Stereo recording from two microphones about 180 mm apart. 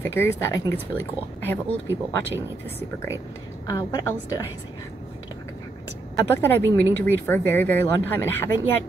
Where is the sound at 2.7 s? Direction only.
15° left (ahead or behind).